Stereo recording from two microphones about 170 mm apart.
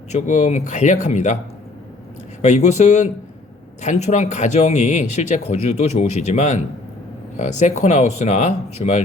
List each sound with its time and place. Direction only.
0.1 s speech: 45° left (ahead or behind)
2.4 s speech: 45° left (ahead or behind)